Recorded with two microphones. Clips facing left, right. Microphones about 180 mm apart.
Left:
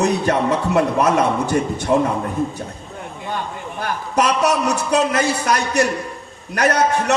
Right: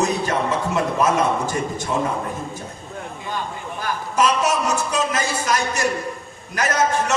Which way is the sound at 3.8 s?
60° left (ahead or behind).